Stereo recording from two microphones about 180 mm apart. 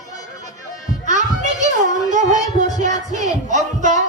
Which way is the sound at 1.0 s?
40° right (ahead or behind).